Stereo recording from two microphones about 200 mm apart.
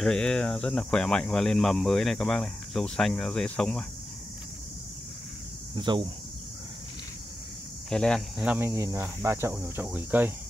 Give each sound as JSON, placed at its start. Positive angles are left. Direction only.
{"t": 0.0, "sound": "speech", "side_deg": 5}
{"t": 5.8, "sound": "speech", "side_deg": -25}
{"t": 7.9, "sound": "speech", "side_deg": 5}